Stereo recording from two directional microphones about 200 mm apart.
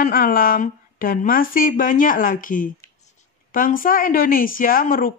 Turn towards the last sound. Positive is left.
turn(degrees=45)  # may be behind; listen again after turning